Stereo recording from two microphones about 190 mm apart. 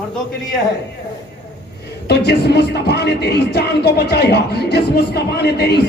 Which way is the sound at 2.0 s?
60° left (ahead or behind).